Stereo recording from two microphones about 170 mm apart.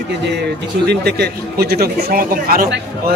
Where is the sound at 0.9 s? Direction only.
70° right (ahead or behind).